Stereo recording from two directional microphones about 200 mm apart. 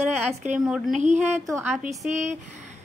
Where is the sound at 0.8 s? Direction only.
35° right (ahead or behind).